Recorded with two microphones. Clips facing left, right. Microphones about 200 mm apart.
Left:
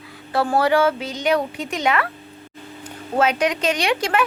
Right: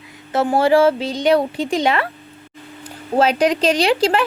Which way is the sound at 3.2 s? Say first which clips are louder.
Right 4 dB; 35° right (ahead or behind).